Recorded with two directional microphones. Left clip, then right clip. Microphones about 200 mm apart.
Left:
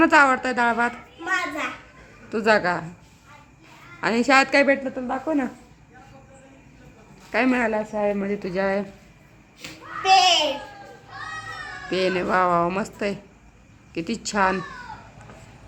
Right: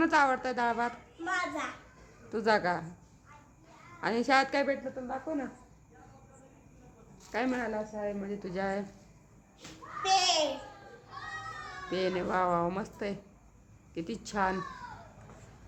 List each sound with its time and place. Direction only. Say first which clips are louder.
0.0 s a child's voice: left 10 dB; 5° left (ahead or behind)
4.0 s speech: left 9 dB; centre (ahead or behind)
4.6 s speech: left 12 dB; 15° left (ahead or behind)
7.3 s a woman's voice: left 11 dB; 10° left (ahead or behind)
10.0 s a child's voice: left 11 dB; 15° left (ahead or behind)
11.9 s speech: left 9 dB; centre (ahead or behind)